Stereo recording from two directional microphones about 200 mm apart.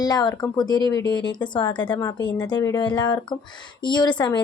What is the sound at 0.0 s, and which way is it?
A woman's voice, 20° left (ahead or behind).